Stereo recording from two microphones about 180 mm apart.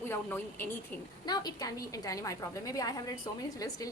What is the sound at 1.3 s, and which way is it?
A woman's voice, 20° left (ahead or behind).